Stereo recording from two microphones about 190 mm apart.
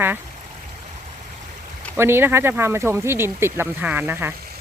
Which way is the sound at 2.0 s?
10° right (ahead or behind).